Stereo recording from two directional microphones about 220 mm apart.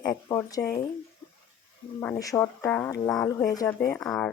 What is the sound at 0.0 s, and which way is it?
Speech, 15° left (ahead or behind).